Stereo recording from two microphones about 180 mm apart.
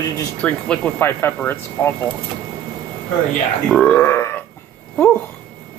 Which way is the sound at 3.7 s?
10° left (ahead or behind).